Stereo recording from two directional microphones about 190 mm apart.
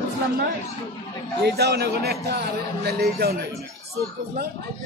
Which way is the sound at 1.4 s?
60° right (ahead or behind).